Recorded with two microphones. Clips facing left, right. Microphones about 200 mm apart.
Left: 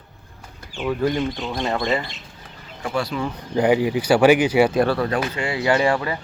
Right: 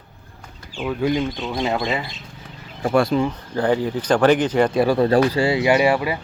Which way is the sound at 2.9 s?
50° right (ahead or behind).